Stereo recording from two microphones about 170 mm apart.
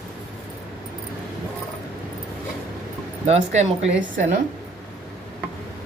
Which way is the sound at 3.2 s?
40° right (ahead or behind).